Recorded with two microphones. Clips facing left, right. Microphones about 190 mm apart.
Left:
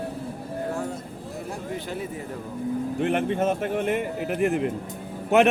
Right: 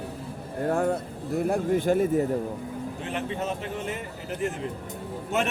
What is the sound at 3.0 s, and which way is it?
Speech, 60° left (ahead or behind).